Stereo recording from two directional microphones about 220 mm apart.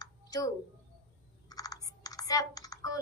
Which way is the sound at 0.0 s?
15° left (ahead or behind).